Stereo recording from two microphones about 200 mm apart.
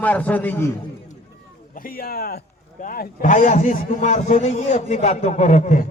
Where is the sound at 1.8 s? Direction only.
45° left (ahead or behind).